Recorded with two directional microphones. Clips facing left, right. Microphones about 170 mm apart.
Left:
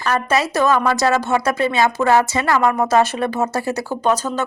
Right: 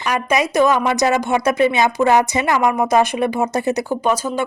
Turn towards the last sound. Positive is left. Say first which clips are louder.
# even
turn(degrees=-10)  # may be behind; listen again after turning